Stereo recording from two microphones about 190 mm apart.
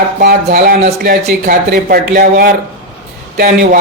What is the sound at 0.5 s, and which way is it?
Speech, 50° right (ahead or behind).